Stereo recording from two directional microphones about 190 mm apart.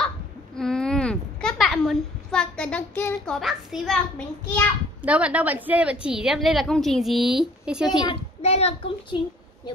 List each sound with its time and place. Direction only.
0.6 s a sound: 5° left (ahead or behind)
5.0 s a woman's voice: 5° right (ahead or behind)
8.0 s a child's voice: 30° left (ahead or behind)